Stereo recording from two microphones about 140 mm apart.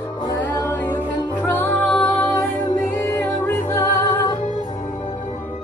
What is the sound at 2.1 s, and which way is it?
Music, centre (ahead or behind).